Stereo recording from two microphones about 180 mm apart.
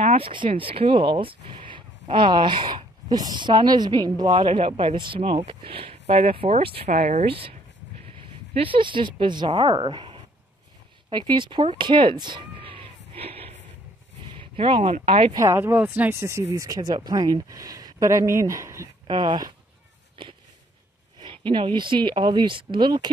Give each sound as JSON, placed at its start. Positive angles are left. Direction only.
{"t": 0.0, "sound": "speech", "side_deg": -35}
{"t": 11.1, "sound": "a sound", "side_deg": -25}
{"t": 14.3, "sound": "speech", "side_deg": -30}
{"t": 15.3, "sound": "speech", "side_deg": -15}
{"t": 21.2, "sound": "speech", "side_deg": -25}